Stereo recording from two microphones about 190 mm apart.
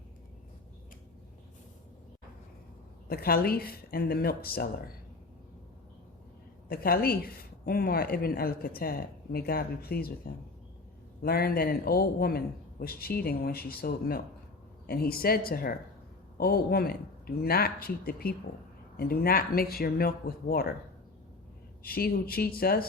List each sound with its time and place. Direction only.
3.1 s a woman's voice: 55° left (ahead or behind)
6.7 s a woman's voice: 50° left (ahead or behind)
21.8 s a woman's voice: 50° left (ahead or behind)